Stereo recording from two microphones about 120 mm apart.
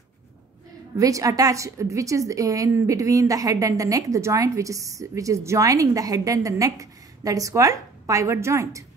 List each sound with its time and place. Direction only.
0.9 s a woman's voice: 30° right (ahead or behind)